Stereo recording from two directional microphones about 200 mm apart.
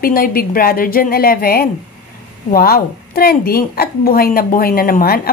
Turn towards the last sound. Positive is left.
turn(degrees=45)  # may be behind; listen again after turning